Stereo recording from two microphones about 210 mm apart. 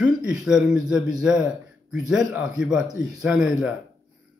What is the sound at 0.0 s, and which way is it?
A man's voice, 5° right (ahead or behind).